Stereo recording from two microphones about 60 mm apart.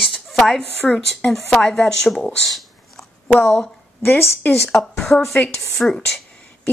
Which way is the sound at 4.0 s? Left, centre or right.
Left.